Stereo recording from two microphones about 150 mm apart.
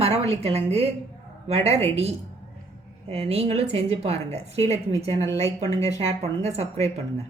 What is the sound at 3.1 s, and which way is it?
A woman's voice, 40° right (ahead or behind).